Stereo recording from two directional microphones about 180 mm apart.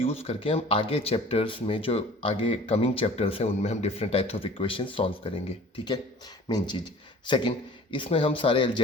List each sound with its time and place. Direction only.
0.0 s speech: 30° left (ahead or behind)